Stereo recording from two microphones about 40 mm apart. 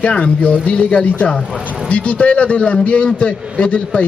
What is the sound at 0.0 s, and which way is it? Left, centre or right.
Speech, left.